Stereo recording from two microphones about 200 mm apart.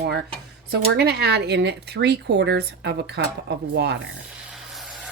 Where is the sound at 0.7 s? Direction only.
55° right (ahead or behind).